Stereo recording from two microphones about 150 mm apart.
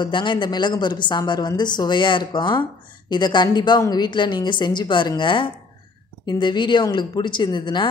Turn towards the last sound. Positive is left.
turn(degrees=30)  # may be behind; listen again after turning